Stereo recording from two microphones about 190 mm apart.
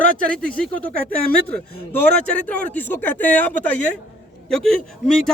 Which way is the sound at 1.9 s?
5° left (ahead or behind).